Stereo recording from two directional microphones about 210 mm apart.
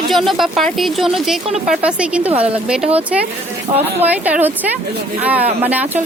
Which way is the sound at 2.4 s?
30° right (ahead or behind).